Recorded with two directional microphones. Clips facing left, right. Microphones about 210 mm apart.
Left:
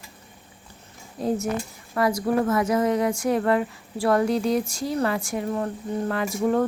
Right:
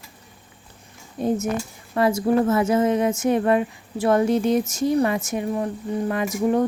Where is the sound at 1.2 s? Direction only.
25° right (ahead or behind).